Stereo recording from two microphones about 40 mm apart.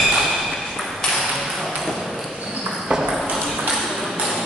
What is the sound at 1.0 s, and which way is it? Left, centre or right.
Ping, centre.